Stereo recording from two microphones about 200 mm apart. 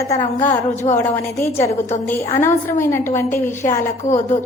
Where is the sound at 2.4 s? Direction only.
10° left (ahead or behind).